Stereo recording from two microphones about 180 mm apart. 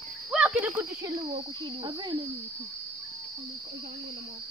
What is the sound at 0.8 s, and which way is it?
Speech, 25° right (ahead or behind).